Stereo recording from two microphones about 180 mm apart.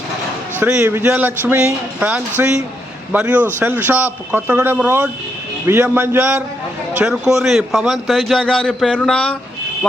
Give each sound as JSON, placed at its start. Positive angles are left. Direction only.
{"t": 0.6, "sound": "a man's voice", "side_deg": -10}